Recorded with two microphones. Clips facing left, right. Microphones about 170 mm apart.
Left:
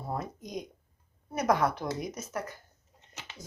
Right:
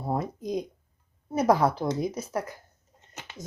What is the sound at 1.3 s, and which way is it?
Speech, 30° right (ahead or behind).